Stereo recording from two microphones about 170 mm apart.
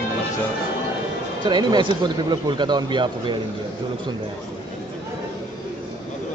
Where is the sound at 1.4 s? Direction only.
25° right (ahead or behind).